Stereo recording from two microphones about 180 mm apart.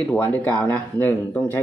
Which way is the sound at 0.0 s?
5° left (ahead or behind).